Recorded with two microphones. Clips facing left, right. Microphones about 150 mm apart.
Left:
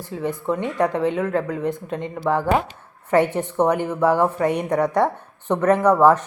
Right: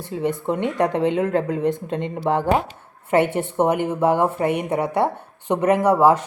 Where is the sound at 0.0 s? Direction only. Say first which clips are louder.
Right 2 dB; 20° right (ahead or behind).